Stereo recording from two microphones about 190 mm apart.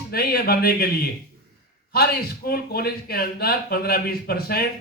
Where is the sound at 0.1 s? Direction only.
55° left (ahead or behind).